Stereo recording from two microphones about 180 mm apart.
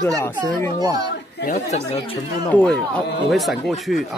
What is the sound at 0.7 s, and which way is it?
Speech, 20° right (ahead or behind).